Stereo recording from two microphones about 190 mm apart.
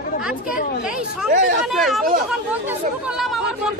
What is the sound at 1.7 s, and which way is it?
Speech, centre (ahead or behind).